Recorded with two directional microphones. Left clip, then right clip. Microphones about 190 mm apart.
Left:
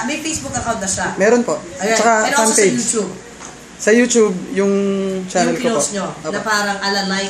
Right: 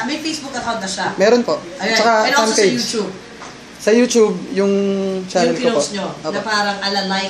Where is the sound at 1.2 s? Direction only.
5° left (ahead or behind).